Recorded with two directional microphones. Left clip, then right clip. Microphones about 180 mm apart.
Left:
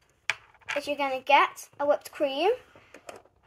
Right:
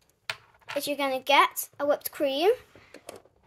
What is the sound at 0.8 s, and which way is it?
Speech, 60° right (ahead or behind).